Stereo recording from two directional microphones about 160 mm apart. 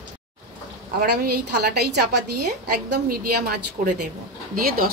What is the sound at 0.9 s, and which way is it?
A woman's voice, 75° right (ahead or behind).